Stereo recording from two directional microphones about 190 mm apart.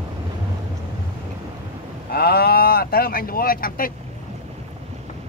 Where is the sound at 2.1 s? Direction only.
55° left (ahead or behind).